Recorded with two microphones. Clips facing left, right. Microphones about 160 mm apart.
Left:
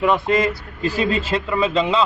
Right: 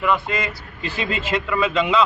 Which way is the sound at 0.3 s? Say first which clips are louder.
Left 8 dB; 45° left (ahead or behind).